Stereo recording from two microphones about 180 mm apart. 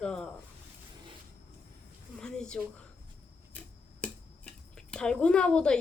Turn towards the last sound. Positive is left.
turn(degrees=5)  # may be behind; listen again after turning